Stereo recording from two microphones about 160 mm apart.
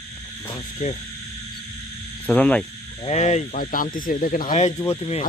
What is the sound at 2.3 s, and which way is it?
Speech, 10° left (ahead or behind).